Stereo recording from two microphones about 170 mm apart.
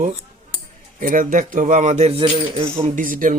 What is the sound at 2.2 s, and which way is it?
Speech, 35° right (ahead or behind).